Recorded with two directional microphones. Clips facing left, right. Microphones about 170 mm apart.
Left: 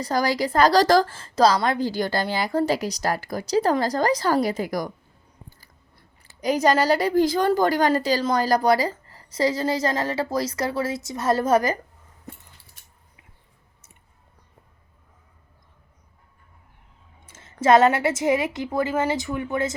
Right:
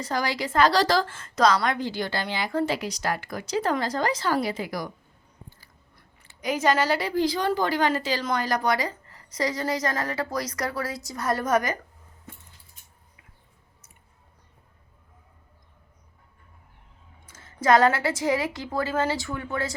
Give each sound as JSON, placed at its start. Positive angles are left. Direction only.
{"t": 0.0, "sound": "a woman's voice", "side_deg": 40}
{"t": 6.0, "sound": "a woman's voice", "side_deg": 35}
{"t": 17.2, "sound": "a woman's voice", "side_deg": 25}